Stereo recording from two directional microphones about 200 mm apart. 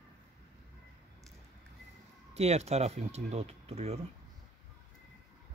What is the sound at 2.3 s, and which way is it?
Speech, 30° right (ahead or behind).